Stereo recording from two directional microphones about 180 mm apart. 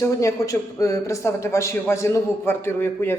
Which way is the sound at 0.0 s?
15° left (ahead or behind).